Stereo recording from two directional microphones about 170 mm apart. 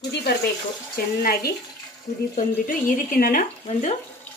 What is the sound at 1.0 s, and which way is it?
Speech, 65° left (ahead or behind).